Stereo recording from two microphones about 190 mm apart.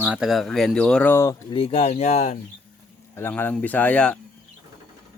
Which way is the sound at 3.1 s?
10° left (ahead or behind).